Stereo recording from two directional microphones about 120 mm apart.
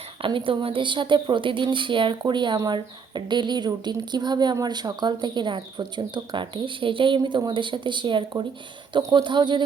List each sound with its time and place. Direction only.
0.2 s a woman's voice: 45° right (ahead or behind)